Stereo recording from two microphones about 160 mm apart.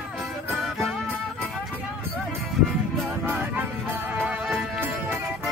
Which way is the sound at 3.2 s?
10° right (ahead or behind).